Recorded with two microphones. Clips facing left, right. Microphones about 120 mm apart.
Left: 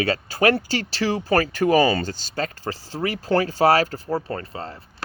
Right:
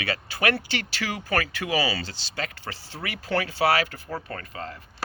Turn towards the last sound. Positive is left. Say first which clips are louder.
# left 5 dB
turn(degrees=35)  # may be behind; listen again after turning